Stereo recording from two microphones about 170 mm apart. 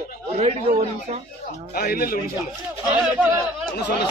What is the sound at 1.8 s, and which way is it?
Speech, 60° left (ahead or behind).